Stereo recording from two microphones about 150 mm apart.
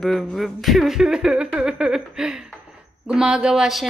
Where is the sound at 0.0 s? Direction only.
5° left (ahead or behind).